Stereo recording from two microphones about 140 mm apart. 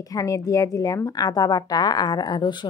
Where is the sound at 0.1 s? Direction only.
25° left (ahead or behind).